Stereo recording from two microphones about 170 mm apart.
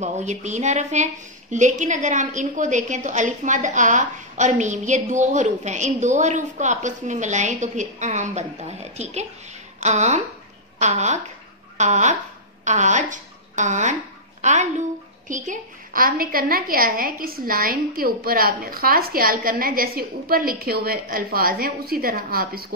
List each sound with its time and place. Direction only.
0.0 s a woman's voice: 45° right (ahead or behind); by 22.7 s 60° right (ahead or behind)